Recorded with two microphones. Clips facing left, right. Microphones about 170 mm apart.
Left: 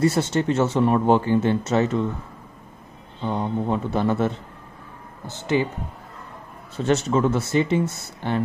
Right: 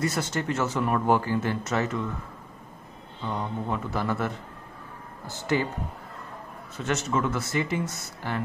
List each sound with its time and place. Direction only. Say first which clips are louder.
0.0 s speech: left 8 dB; 25° left (ahead or behind)
3.3 s speech: left 6 dB; 30° left (ahead or behind)
6.8 s speech: left 7 dB; 30° left (ahead or behind)